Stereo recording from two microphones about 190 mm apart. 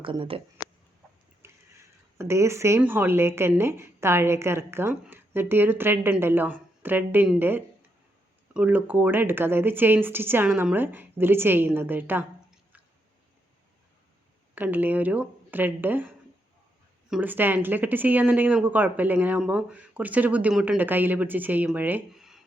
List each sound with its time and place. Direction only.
0.0 s speech: 30° right (ahead or behind)
1.4 s speech: 15° right (ahead or behind)
14.5 s speech: 10° right (ahead or behind)